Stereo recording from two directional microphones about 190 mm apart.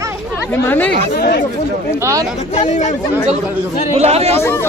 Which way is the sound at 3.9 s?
35° right (ahead or behind).